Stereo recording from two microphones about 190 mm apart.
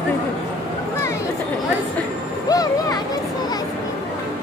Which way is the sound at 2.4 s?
20° left (ahead or behind).